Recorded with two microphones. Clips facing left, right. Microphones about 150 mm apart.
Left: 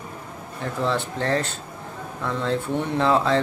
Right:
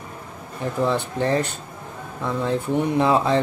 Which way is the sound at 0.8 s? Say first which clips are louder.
Right 2 dB; 15° right (ahead or behind).